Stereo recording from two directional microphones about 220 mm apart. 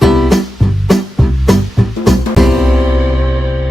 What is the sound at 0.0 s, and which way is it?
Music, centre (ahead or behind).